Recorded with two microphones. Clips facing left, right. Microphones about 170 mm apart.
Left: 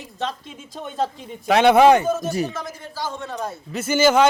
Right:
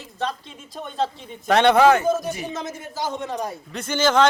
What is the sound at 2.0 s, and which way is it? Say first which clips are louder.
Speech: left 1 dB; 15° right (ahead or behind).